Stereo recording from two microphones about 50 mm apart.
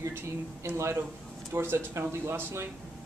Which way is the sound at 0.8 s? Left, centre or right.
Right.